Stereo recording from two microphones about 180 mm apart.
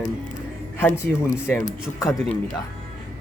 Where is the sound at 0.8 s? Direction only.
10° left (ahead or behind).